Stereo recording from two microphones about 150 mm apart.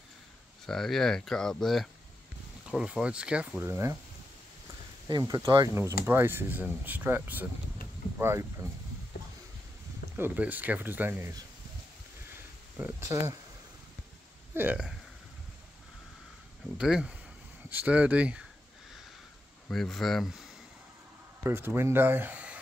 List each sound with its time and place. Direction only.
0.7 s speech: centre (ahead or behind); by 3.9 s 15° right (ahead or behind)
5.0 s speech: 25° right (ahead or behind)
6.0 s speech: 15° right (ahead or behind)
10.1 s speech: 10° right (ahead or behind)
12.7 s speech: 10° right (ahead or behind)
14.5 s speech: 15° right (ahead or behind)
16.7 s speech: 5° right (ahead or behind)
19.7 s speech: centre (ahead or behind)
21.5 s speech: 15° right (ahead or behind)